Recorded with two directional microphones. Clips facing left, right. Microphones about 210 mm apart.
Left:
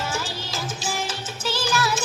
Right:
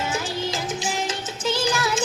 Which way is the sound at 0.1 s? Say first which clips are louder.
Right 4 dB; 20° right (ahead or behind).